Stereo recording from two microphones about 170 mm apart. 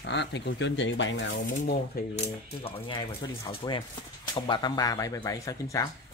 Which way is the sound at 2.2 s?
35° left (ahead or behind).